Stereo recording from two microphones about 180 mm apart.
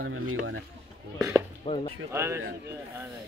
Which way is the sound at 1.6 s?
35° left (ahead or behind).